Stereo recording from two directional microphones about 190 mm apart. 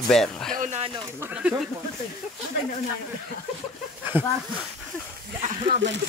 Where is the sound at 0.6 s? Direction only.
40° right (ahead or behind).